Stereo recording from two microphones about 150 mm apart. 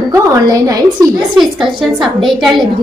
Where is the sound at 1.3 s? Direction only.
Centre (ahead or behind).